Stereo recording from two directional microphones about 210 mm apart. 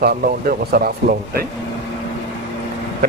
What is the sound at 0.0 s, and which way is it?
Speech, 45° right (ahead or behind).